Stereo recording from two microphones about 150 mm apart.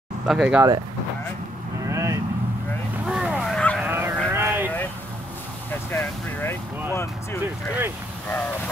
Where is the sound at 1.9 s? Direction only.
20° right (ahead or behind).